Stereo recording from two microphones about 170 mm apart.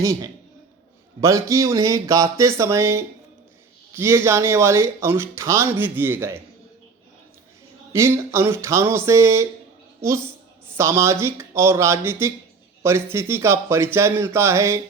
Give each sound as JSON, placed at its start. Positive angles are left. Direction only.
{"t": 0.0, "sound": "speech", "side_deg": -20}
{"t": 7.9, "sound": "speech", "side_deg": -15}